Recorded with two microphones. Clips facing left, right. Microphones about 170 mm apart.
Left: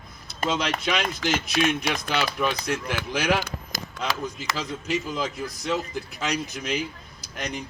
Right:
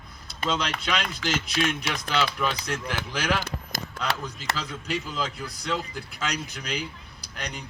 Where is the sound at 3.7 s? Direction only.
60° right (ahead or behind).